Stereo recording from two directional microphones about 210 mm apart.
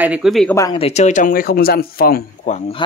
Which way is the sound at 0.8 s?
30° left (ahead or behind).